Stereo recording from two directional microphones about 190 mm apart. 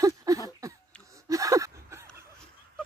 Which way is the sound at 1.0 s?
15° right (ahead or behind).